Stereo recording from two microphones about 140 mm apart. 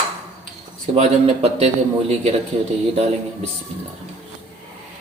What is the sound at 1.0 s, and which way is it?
Speech, 45° right (ahead or behind).